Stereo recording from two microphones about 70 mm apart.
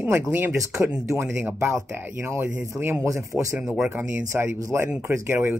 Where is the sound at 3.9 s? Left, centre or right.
Right.